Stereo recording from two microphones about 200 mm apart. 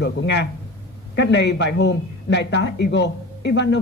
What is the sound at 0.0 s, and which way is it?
Speech, 60° left (ahead or behind).